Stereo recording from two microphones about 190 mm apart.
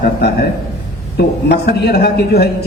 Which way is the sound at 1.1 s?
60° left (ahead or behind).